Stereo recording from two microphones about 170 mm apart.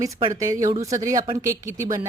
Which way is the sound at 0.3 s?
20° right (ahead or behind).